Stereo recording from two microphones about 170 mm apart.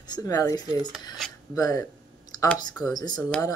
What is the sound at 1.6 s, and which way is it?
Speech, 20° left (ahead or behind).